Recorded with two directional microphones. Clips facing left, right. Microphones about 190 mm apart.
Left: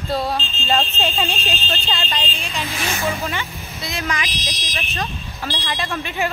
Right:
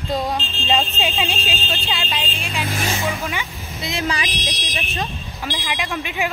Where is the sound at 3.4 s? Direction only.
25° right (ahead or behind).